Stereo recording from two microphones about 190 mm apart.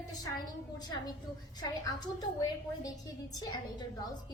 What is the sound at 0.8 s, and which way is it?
A woman's voice, 20° left (ahead or behind).